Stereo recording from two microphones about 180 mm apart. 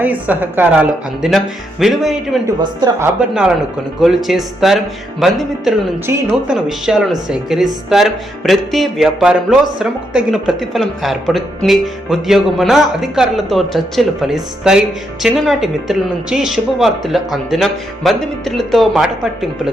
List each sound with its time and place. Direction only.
0.0 s a woman's voice: 10° right (ahead or behind)
2.6 s speech: 25° right (ahead or behind)
3.2 s speech: 5° right (ahead or behind)